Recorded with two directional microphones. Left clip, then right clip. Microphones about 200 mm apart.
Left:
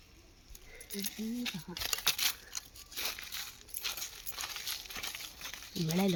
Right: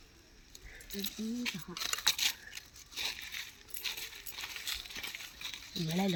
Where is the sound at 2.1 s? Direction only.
25° left (ahead or behind).